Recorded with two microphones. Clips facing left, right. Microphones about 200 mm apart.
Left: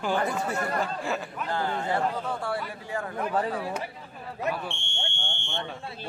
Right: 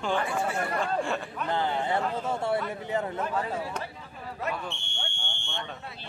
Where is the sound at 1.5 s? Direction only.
20° right (ahead or behind).